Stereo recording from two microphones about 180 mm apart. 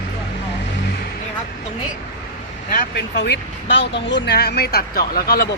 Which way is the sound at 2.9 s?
75° left (ahead or behind).